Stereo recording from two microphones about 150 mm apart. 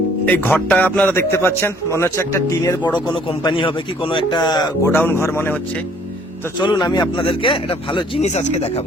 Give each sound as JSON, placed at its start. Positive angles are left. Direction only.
{"t": 0.3, "sound": "a man's voice", "side_deg": 10}
{"t": 3.2, "sound": "speech", "side_deg": 35}
{"t": 6.6, "sound": "speech", "side_deg": 30}